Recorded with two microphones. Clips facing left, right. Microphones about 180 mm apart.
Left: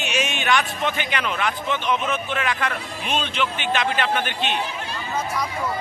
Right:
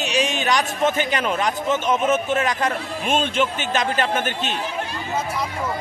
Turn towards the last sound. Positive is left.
turn(degrees=-45)  # may be behind; listen again after turning